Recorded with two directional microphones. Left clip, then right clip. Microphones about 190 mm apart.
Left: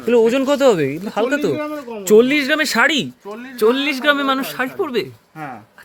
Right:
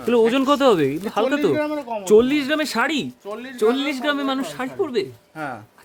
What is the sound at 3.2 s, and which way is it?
Speech, 35° right (ahead or behind).